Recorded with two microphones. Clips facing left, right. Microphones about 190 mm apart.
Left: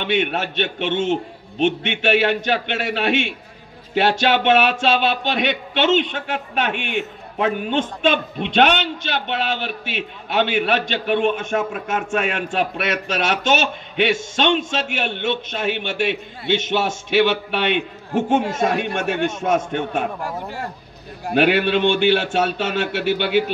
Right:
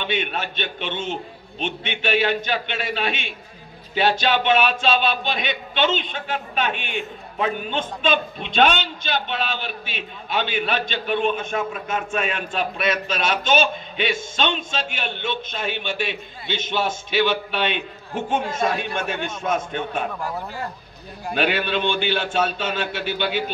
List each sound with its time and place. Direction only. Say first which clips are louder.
0.0 s speech: left 5 dB; 70° left (ahead or behind)
21.3 s speech: left 6 dB; 65° left (ahead or behind)